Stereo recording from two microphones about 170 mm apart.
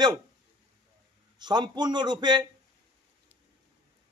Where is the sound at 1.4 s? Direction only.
25° right (ahead or behind).